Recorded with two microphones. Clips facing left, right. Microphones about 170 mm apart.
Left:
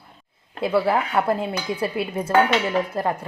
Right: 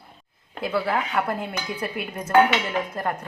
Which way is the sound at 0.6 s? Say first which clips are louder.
Left 4 dB; 25° left (ahead or behind).